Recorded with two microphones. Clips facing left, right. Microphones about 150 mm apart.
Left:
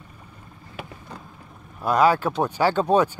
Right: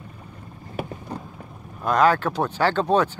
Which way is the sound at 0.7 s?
40° right (ahead or behind).